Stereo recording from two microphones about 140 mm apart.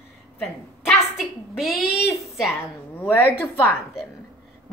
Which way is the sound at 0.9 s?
Centre (ahead or behind).